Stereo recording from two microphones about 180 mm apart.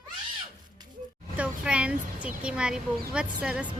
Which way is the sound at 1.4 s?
5° right (ahead or behind).